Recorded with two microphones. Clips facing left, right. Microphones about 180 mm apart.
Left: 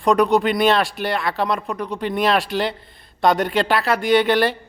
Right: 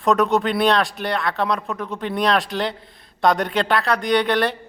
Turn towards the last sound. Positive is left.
turn(degrees=0)  # may be behind; listen again after turning